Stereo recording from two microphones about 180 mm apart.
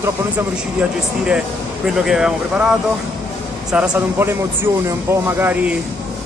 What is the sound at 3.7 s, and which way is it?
Speech, 5° right (ahead or behind).